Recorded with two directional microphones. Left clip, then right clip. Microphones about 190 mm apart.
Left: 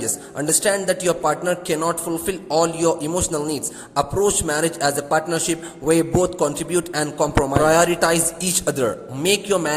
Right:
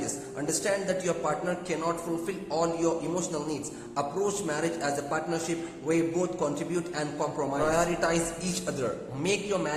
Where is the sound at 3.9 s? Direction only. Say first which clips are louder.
Left 10 dB; 45° left (ahead or behind).